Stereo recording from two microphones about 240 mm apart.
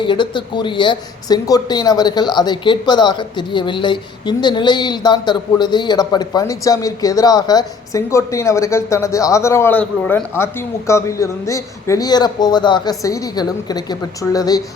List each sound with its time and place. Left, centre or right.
0.0 s speech: centre